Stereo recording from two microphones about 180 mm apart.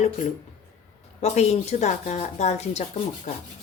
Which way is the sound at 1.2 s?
35° left (ahead or behind).